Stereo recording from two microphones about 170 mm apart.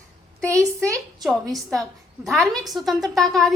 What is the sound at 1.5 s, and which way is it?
A woman's voice, centre (ahead or behind).